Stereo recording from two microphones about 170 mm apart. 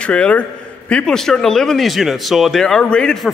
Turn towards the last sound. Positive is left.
turn(degrees=5)  # may be behind; listen again after turning